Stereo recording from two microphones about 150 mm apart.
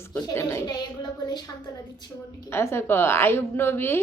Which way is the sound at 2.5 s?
15° left (ahead or behind).